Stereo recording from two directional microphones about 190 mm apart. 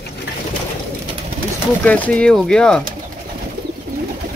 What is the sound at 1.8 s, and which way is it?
Speech, 5° left (ahead or behind).